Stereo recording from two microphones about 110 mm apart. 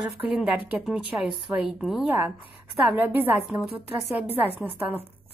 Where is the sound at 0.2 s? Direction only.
10° right (ahead or behind).